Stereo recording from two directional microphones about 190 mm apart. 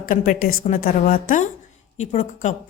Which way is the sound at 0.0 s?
45° left (ahead or behind).